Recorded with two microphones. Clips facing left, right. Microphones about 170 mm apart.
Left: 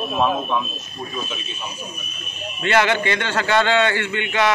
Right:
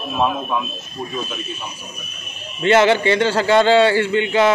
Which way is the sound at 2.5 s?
30° right (ahead or behind).